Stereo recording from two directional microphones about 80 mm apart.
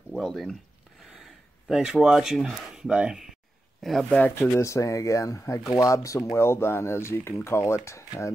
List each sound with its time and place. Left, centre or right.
0.1 s speech: centre
1.0 s a sound: centre
2.3 s speech: centre
3.8 s speech: centre
4.4 s speech: left